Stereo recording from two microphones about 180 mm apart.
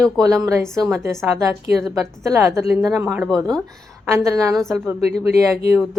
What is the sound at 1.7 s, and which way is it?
Speech, centre (ahead or behind).